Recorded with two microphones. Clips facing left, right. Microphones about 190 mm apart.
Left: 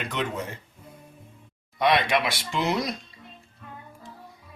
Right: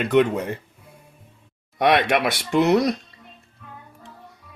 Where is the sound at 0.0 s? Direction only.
60° right (ahead or behind).